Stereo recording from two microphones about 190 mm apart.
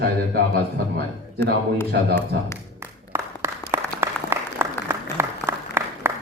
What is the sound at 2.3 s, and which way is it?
Speech, 60° right (ahead or behind).